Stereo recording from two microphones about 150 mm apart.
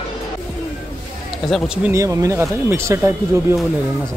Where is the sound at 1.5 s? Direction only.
Centre (ahead or behind).